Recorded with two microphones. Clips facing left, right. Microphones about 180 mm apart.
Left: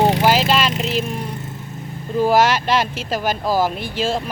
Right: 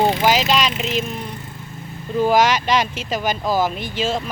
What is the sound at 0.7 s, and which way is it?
Speech, 40° left (ahead or behind).